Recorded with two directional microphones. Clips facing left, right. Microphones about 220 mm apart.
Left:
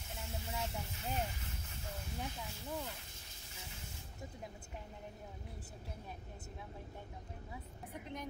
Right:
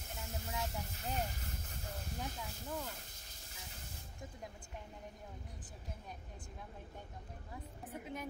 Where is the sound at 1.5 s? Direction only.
45° right (ahead or behind).